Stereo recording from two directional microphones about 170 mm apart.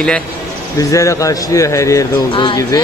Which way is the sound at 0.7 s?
20° left (ahead or behind).